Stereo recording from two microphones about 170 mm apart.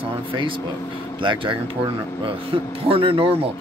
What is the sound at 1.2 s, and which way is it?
Speech, 30° right (ahead or behind).